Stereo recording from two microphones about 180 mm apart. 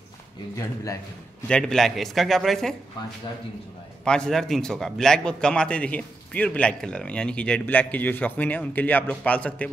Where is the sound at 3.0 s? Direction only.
25° left (ahead or behind).